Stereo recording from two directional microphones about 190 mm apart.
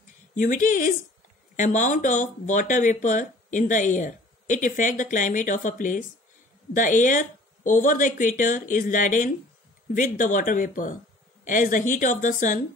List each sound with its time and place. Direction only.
0.4 s speech: 45° left (ahead or behind)